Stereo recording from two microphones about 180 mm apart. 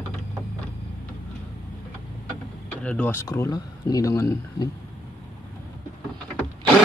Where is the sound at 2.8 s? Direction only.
5° left (ahead or behind).